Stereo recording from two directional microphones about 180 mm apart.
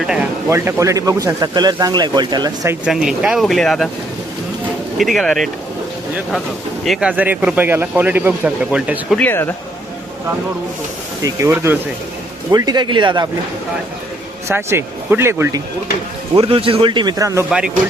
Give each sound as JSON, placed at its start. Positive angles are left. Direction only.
{"t": 0.0, "sound": "a sound", "side_deg": -5}
{"t": 0.4, "sound": "speech", "side_deg": -15}
{"t": 2.8, "sound": "speech", "side_deg": -5}
{"t": 4.9, "sound": "speech", "side_deg": 0}
{"t": 6.8, "sound": "speech", "side_deg": 0}
{"t": 9.1, "sound": "speech", "side_deg": 10}
{"t": 11.2, "sound": "speech", "side_deg": -20}
{"t": 14.4, "sound": "speech", "side_deg": -15}
{"t": 16.3, "sound": "speech", "side_deg": -30}